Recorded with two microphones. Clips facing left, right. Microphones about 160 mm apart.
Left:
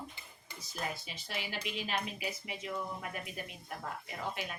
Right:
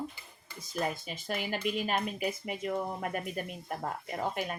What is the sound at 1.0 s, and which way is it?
Speech, 50° right (ahead or behind).